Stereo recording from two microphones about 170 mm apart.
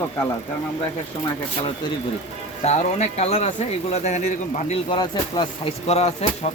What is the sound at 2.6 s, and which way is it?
Speech, 40° left (ahead or behind).